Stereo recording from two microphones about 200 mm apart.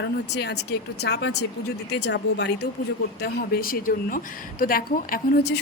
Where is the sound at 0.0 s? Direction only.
55° left (ahead or behind).